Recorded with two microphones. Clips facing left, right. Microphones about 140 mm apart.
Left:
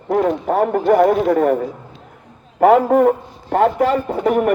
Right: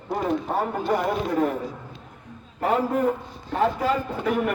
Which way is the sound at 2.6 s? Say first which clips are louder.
Left 11 dB; 90° left.